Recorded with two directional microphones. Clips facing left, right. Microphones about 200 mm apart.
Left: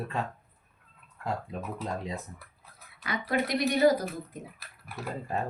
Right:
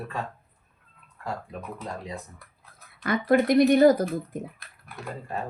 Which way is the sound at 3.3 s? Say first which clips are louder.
Right 9 dB; 50° right (ahead or behind).